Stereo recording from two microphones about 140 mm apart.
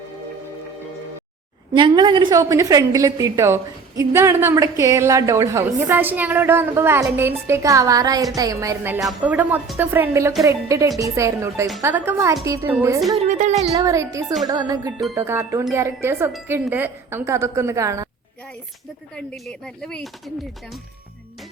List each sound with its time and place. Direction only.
1.7 s a woman's voice: 35° right (ahead or behind); by 9.0 s 20° right (ahead or behind)
9.0 s a woman's voice: 5° right (ahead or behind); by 12.7 s 20° right (ahead or behind)
13.2 s speech: 60° right (ahead or behind)
13.8 s a woman's voice: 20° right (ahead or behind)
19.1 s speech: 5° left (ahead or behind)